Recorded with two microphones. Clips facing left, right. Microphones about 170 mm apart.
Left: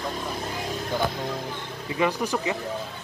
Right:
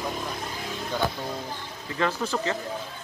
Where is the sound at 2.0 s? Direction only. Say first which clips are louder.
Left 2 dB; 15° left (ahead or behind).